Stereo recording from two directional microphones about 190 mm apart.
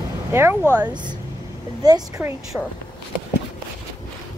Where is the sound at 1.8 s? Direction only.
15° right (ahead or behind).